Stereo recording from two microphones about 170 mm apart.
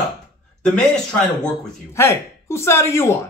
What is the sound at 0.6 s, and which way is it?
A man's voice, 5° left (ahead or behind).